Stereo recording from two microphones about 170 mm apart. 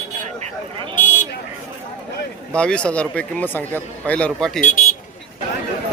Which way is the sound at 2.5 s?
5° left (ahead or behind).